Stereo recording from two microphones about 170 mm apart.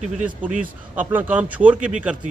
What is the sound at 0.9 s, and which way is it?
Speech, 10° right (ahead or behind).